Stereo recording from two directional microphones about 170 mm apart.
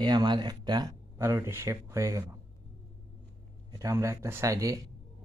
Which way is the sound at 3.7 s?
20° right (ahead or behind).